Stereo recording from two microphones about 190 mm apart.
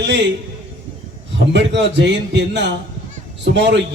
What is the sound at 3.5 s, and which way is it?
Speech, 65° right (ahead or behind).